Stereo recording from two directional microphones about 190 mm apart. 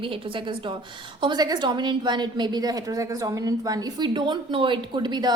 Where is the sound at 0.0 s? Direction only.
30° right (ahead or behind).